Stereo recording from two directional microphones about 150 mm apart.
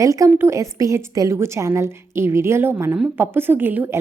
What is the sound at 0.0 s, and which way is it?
A woman's voice, 20° right (ahead or behind).